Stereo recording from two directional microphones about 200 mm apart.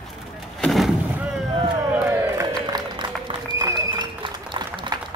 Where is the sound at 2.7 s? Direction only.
20° right (ahead or behind).